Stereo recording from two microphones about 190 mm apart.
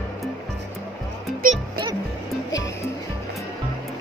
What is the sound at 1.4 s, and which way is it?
Music, 45° right (ahead or behind).